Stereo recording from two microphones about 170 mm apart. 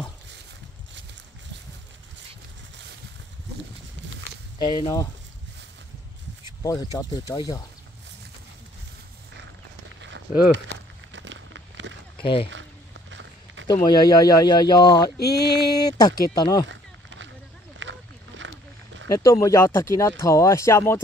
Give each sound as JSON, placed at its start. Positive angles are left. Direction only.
{"t": 4.6, "sound": "speech", "side_deg": 20}
{"t": 6.6, "sound": "speech", "side_deg": 20}
{"t": 9.8, "sound": "walk", "side_deg": -90}
{"t": 11.1, "sound": "a sound", "side_deg": -90}
{"t": 12.2, "sound": "speech", "side_deg": 30}
{"t": 13.1, "sound": "walk", "side_deg": -90}
{"t": 13.8, "sound": "speech", "side_deg": 20}
{"t": 15.1, "sound": "a sound", "side_deg": 70}
{"t": 15.9, "sound": "speech", "side_deg": 20}
{"t": 16.6, "sound": "a sound", "side_deg": -90}
{"t": 17.7, "sound": "boat", "side_deg": -90}
{"t": 19.0, "sound": "speech", "side_deg": 20}